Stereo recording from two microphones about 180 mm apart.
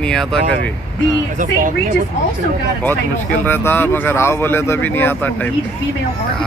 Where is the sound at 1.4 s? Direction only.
50° right (ahead or behind).